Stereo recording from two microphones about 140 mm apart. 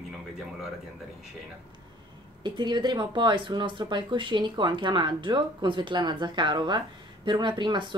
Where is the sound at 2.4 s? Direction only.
35° right (ahead or behind).